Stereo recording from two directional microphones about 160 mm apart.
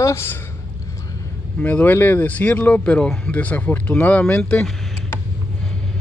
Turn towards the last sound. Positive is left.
turn(degrees=5)  # may be behind; listen again after turning